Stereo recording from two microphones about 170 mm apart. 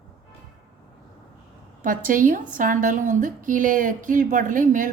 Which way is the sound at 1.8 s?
50° right (ahead or behind).